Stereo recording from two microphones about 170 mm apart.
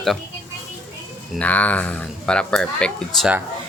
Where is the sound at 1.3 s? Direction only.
10° left (ahead or behind).